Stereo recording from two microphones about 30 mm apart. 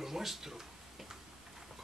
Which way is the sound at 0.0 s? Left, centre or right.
Centre.